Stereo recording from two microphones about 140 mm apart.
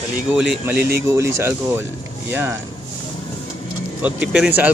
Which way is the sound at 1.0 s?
20° right (ahead or behind).